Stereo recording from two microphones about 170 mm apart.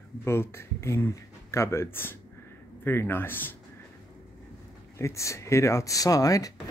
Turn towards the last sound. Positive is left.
turn(degrees=20)  # may be behind; listen again after turning